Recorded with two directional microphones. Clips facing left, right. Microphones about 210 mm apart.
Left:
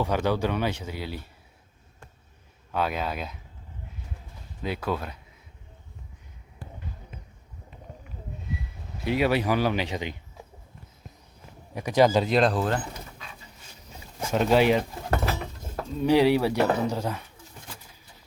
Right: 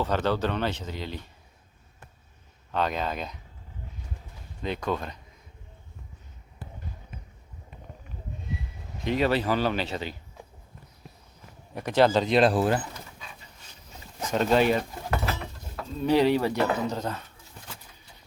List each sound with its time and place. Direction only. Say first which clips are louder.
0.0 s speech: left 1 dB; 10° left (ahead or behind)
2.7 s speech: even; 5° left (ahead or behind)
4.6 s speech: even; 5° left (ahead or behind)
9.0 s speech: left 1 dB; 10° left (ahead or behind)
11.7 s speech: left 1 dB; 10° left (ahead or behind)
12.3 s speech: right 1 dB; 5° right (ahead or behind)
14.2 s speech: left 1 dB; 10° left (ahead or behind)
16.0 s speech: left 2 dB; 10° left (ahead or behind)